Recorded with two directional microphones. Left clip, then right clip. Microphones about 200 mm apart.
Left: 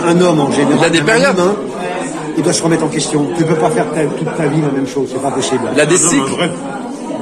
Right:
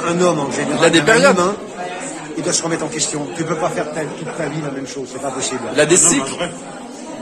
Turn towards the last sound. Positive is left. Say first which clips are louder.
# left 2 dB
turn(degrees=-10)  # may be behind; listen again after turning